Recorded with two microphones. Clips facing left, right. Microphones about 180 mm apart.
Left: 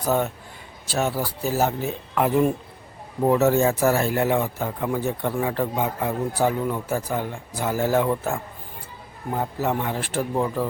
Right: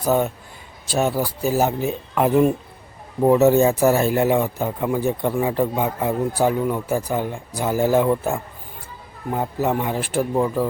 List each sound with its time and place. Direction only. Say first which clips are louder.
0.9 s speech: right 4 dB; 15° right (ahead or behind)